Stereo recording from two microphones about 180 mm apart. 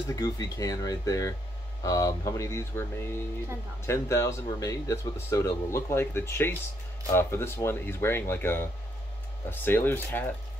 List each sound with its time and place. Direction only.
0.1 s speech: 20° left (ahead or behind)